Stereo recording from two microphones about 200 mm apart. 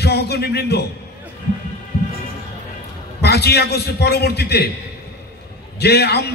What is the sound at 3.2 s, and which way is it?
A man's voice, 55° left (ahead or behind).